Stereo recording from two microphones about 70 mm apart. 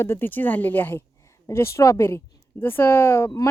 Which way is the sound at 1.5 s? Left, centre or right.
Left.